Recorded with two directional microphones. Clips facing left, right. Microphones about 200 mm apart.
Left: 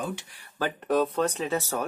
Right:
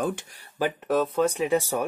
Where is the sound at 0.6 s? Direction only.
Centre (ahead or behind).